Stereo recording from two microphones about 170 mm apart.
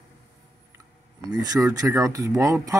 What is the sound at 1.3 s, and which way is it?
Speech, 25° right (ahead or behind).